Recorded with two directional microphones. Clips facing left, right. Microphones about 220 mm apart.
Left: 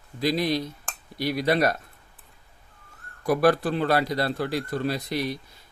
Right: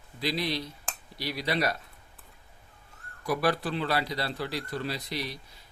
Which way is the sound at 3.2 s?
50° left (ahead or behind).